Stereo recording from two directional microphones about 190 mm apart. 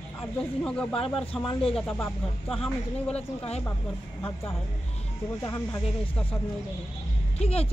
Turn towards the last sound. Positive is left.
turn(degrees=30)  # may be behind; listen again after turning